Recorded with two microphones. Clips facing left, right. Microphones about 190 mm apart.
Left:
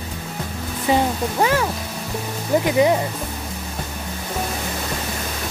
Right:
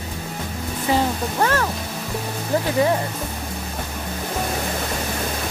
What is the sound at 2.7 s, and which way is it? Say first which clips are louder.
Speech: left 3 dB; 15° left (ahead or behind).